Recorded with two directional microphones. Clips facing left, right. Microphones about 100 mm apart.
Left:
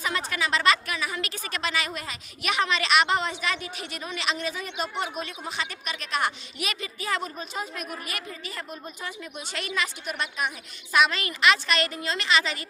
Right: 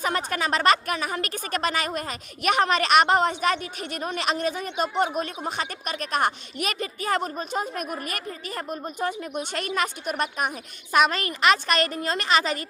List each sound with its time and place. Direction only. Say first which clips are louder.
0.0 s a woman's voice: right 3 dB; 45° right (ahead or behind)